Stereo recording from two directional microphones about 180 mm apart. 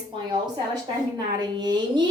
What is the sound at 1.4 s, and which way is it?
Speech, 25° right (ahead or behind).